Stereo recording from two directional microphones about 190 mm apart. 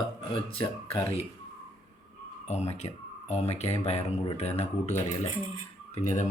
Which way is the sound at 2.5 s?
35° left (ahead or behind).